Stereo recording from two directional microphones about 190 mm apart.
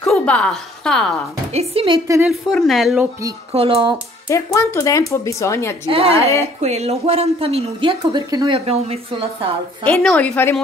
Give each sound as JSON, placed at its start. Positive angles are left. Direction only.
{"t": 0.0, "sound": "a woman's voice", "side_deg": 5}
{"t": 1.5, "sound": "speech", "side_deg": -30}
{"t": 2.2, "sound": "speech", "side_deg": 0}
{"t": 3.5, "sound": "a woman's voice", "side_deg": -30}
{"t": 4.3, "sound": "speech", "side_deg": 15}
{"t": 5.9, "sound": "a woman's voice", "side_deg": -30}
{"t": 9.8, "sound": "speech", "side_deg": 5}